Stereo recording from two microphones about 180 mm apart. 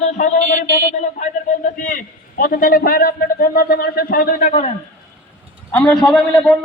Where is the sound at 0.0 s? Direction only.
40° left (ahead or behind).